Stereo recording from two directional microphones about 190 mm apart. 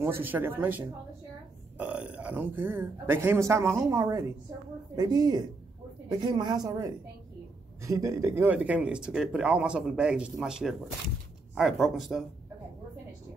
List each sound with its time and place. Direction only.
0.0 s a woman's voice: 10° right (ahead or behind)